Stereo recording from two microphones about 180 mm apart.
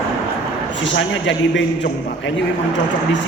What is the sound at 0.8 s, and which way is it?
A man's voice, 90° left.